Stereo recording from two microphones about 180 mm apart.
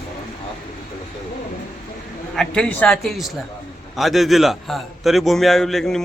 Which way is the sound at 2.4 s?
5° left (ahead or behind).